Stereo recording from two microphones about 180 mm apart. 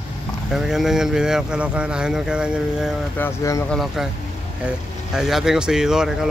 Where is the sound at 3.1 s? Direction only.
15° left (ahead or behind).